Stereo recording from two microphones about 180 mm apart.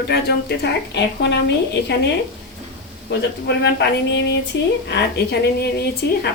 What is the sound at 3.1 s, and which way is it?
A woman's voice, 70° left (ahead or behind).